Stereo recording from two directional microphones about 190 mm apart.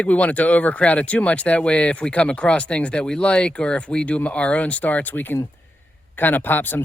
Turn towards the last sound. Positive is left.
turn(degrees=10)  # may be behind; listen again after turning